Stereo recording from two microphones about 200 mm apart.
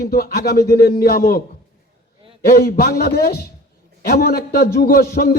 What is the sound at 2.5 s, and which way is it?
A man's voice, 50° left (ahead or behind).